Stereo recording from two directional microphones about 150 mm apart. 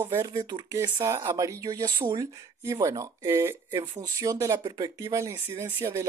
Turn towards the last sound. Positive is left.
turn(degrees=-15)  # may be behind; listen again after turning